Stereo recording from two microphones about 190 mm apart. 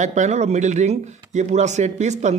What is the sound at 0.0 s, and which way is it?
A man's voice, 40° right (ahead or behind).